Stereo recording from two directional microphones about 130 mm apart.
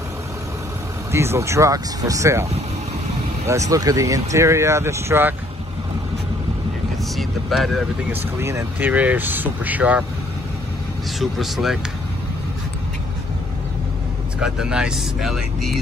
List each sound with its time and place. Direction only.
1.1 s speech: 20° right (ahead or behind)
3.4 s speech: 25° right (ahead or behind)
7.2 s speech: centre (ahead or behind)
8.1 s speech: 20° right (ahead or behind)
11.1 s speech: centre (ahead or behind)
14.4 s speech: 5° right (ahead or behind)